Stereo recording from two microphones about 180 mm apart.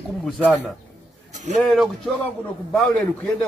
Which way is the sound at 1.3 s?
40° right (ahead or behind).